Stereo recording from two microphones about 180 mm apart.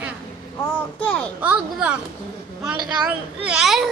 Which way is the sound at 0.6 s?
10° left (ahead or behind).